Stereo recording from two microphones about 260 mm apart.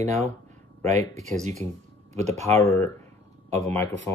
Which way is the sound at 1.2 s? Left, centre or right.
Right.